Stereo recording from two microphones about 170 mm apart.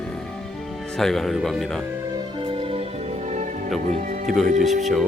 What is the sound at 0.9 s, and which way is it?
Speech, centre (ahead or behind).